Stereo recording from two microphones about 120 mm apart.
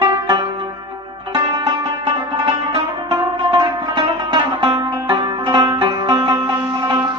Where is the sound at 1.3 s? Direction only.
35° right (ahead or behind).